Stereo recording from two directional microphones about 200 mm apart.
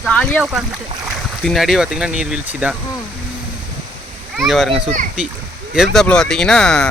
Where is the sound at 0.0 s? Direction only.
5° left (ahead or behind).